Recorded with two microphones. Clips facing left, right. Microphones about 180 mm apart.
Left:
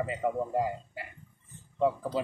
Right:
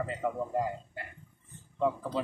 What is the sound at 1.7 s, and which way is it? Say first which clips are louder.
Speech: left 2 dB; 15° left (ahead or behind).